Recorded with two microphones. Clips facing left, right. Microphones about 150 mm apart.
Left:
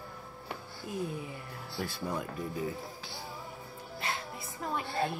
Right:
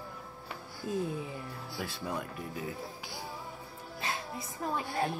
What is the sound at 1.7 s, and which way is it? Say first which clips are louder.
Insect: left 2 dB; 10° right (ahead or behind).